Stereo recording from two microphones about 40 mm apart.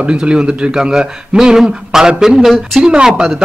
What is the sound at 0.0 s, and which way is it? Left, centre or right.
A man's voice, right.